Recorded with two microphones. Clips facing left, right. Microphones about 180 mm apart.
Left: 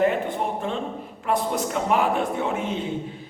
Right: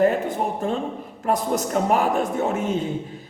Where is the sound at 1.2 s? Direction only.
40° right (ahead or behind).